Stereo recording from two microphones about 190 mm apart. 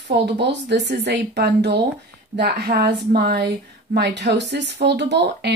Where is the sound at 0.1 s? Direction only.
65° right (ahead or behind).